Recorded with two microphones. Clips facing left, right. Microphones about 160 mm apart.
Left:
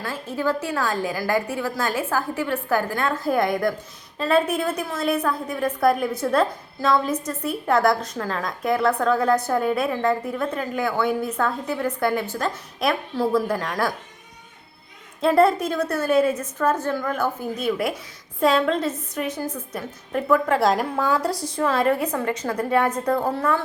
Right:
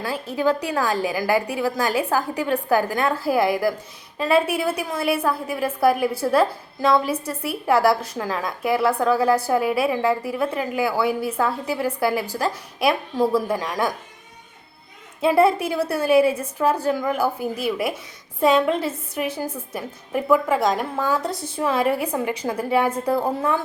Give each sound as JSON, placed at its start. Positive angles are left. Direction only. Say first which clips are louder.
{"t": 0.0, "sound": "a woman's voice", "louder": "right 3 dB", "side_deg": -15}
{"t": 15.2, "sound": "a woman's voice", "louder": "even", "side_deg": -5}
{"t": 20.6, "sound": "a woman's voice", "louder": "left 1 dB", "side_deg": 0}
{"t": 21.3, "sound": "a woman's voice", "louder": "left 2 dB", "side_deg": -30}
{"t": 21.6, "sound": "a woman's voice", "louder": "even", "side_deg": -10}